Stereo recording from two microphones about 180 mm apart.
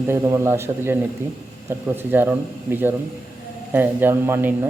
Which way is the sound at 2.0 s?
10° right (ahead or behind).